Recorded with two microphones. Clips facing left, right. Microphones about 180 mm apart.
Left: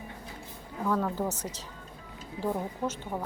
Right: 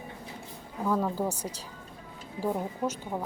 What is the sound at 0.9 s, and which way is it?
A woman's voice, 10° right (ahead or behind).